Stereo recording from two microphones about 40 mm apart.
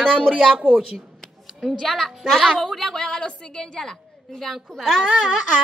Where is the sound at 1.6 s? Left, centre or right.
Centre.